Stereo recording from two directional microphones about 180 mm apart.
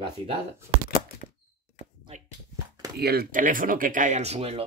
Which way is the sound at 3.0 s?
60° right (ahead or behind).